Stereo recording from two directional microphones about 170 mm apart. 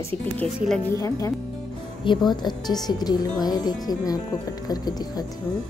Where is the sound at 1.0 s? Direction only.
20° left (ahead or behind).